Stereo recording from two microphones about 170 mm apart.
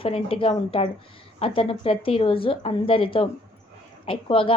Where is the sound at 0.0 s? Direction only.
35° left (ahead or behind).